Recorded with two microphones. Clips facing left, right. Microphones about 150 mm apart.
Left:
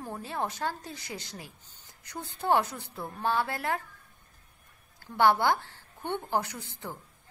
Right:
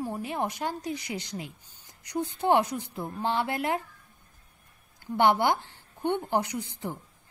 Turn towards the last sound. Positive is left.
turn(degrees=-15)  # may be behind; listen again after turning